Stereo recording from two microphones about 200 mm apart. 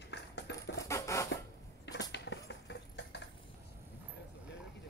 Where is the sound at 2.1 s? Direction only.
60° left (ahead or behind).